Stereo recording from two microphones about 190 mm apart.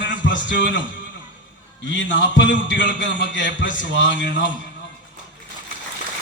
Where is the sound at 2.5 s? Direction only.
70° left (ahead or behind).